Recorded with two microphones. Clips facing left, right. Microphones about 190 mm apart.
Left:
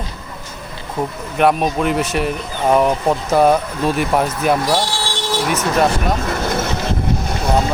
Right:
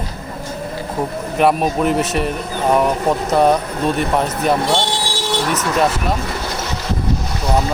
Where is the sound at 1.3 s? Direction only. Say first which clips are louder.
Even; centre (ahead or behind).